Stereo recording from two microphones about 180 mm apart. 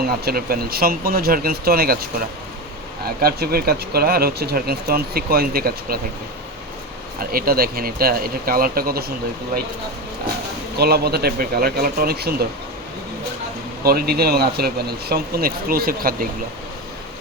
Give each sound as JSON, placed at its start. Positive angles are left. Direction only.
{"t": 0.3, "sound": "speech", "side_deg": -55}
{"t": 3.2, "sound": "speech", "side_deg": -60}
{"t": 7.2, "sound": "speech", "side_deg": -55}
{"t": 10.8, "sound": "speech", "side_deg": -60}
{"t": 13.8, "sound": "speech", "side_deg": -60}